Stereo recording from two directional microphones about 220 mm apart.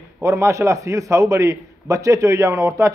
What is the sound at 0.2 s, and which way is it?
A man's voice, 15° right (ahead or behind).